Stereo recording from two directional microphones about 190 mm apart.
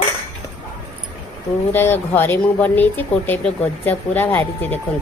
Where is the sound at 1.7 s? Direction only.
10° left (ahead or behind).